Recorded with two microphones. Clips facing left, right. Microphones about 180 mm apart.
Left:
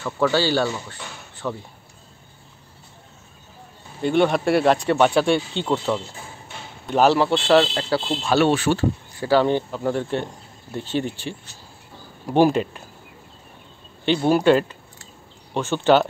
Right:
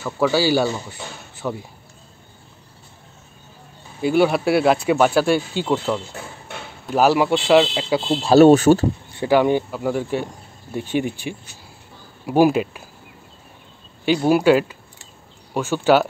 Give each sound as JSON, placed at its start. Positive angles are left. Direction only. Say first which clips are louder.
{"t": 0.0, "sound": "speech", "louder": "right 2 dB", "side_deg": -10}
{"t": 4.0, "sound": "speech", "louder": "right 2 dB", "side_deg": -5}
{"t": 8.2, "sound": "speech", "louder": "right 10 dB", "side_deg": -40}
{"t": 9.1, "sound": "speech", "louder": "right 2 dB", "side_deg": -20}
{"t": 14.0, "sound": "speech", "louder": "right 1 dB", "side_deg": -10}